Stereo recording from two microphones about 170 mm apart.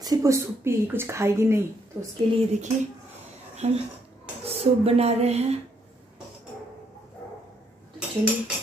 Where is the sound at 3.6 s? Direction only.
40° right (ahead or behind).